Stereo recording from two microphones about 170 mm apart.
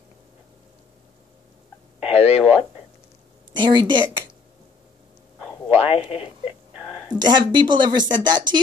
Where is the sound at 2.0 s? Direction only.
35° left (ahead or behind).